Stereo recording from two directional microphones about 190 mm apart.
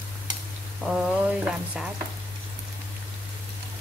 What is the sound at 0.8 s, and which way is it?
Speech, centre (ahead or behind).